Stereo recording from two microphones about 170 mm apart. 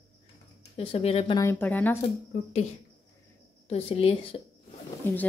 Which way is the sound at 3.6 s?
35° left (ahead or behind).